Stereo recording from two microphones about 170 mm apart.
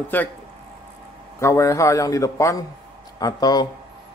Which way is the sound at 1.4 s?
15° left (ahead or behind).